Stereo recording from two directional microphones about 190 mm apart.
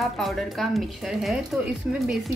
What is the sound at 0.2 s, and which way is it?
A woman's voice, centre (ahead or behind).